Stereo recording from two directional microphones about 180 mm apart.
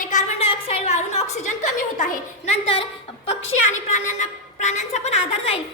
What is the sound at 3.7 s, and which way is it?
A woman's voice, 40° left (ahead or behind).